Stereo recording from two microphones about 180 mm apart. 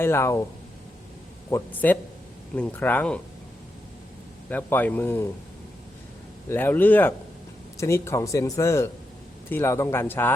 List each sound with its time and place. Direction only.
0.0 s speech: 15° left (ahead or behind)
1.5 s speech: 10° left (ahead or behind)
4.4 s speech: 10° left (ahead or behind)
6.5 s speech: 10° left (ahead or behind)